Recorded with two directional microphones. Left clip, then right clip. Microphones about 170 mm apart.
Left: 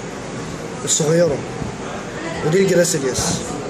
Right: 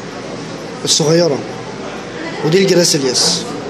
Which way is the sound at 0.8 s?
30° right (ahead or behind).